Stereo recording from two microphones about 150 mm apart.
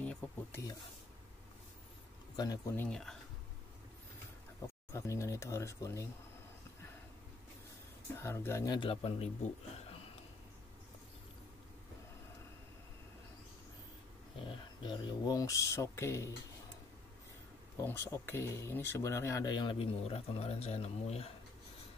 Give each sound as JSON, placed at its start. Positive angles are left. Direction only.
{"t": 0.0, "sound": "a sound", "side_deg": 10}
{"t": 2.3, "sound": "speech", "side_deg": 25}
{"t": 2.7, "sound": "speech", "side_deg": 15}
{"t": 4.9, "sound": "speech", "side_deg": 20}
{"t": 8.2, "sound": "speech", "side_deg": 15}
{"t": 8.7, "sound": "speech", "side_deg": 35}
{"t": 14.4, "sound": "speech", "side_deg": 30}
{"t": 17.7, "sound": "speech", "side_deg": 20}